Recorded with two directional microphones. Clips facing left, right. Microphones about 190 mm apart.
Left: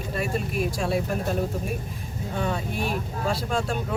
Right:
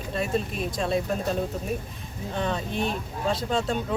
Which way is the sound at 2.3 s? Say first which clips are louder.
Even; 10° left (ahead or behind).